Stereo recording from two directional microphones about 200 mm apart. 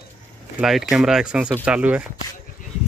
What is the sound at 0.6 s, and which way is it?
Speech, centre (ahead or behind).